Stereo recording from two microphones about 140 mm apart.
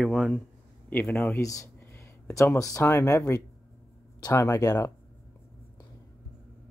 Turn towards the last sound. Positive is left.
turn(degrees=25)  # may be behind; listen again after turning